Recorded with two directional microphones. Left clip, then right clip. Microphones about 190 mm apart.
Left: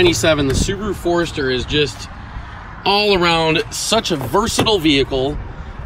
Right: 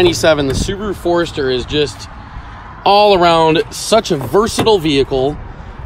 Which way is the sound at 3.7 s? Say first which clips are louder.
Right 4 dB; 25° right (ahead or behind).